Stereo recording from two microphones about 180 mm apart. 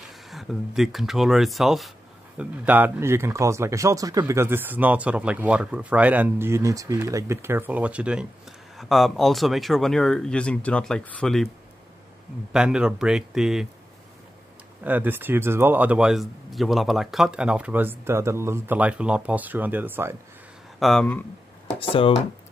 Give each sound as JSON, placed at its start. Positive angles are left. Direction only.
{"t": 0.3, "sound": "speech", "side_deg": 0}
{"t": 12.5, "sound": "speech", "side_deg": -5}
{"t": 14.8, "sound": "speech", "side_deg": -10}
{"t": 20.8, "sound": "speech", "side_deg": 5}
{"t": 21.7, "sound": "speech", "side_deg": 30}